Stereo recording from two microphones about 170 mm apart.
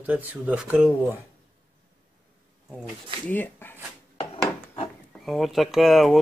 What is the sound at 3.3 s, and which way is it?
Speech, 10° left (ahead or behind).